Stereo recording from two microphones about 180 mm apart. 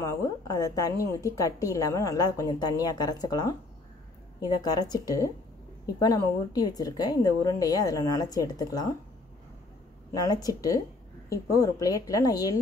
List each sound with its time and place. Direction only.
0.0 s a woman's voice: 20° left (ahead or behind)
10.2 s a woman's voice: 20° left (ahead or behind)